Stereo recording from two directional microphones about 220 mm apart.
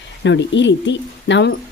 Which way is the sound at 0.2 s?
55° left (ahead or behind).